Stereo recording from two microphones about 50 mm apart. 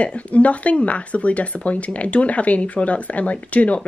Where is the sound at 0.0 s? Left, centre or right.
Left.